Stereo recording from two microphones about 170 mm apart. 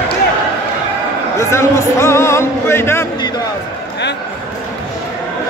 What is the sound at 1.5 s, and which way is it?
Speech, 15° left (ahead or behind).